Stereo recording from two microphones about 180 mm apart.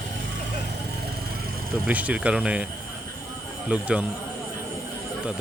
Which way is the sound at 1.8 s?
10° right (ahead or behind).